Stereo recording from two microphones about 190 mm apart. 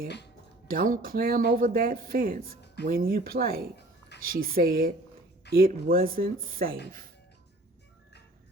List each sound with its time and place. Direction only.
0.7 s speech: 50° right (ahead or behind)